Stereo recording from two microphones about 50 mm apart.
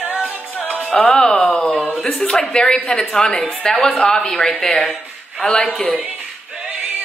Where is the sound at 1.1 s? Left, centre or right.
Centre.